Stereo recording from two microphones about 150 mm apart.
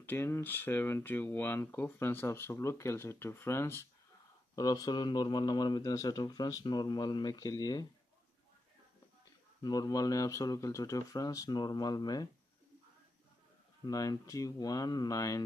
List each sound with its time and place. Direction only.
0.0 s speech: 15° left (ahead or behind)
9.6 s speech: 25° left (ahead or behind)
13.8 s speech: 25° left (ahead or behind)